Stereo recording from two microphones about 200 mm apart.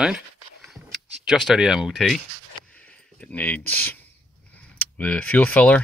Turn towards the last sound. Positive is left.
turn(degrees=5)  # may be behind; listen again after turning